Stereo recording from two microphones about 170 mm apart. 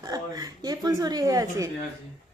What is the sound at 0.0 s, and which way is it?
A woman's voice, 20° right (ahead or behind).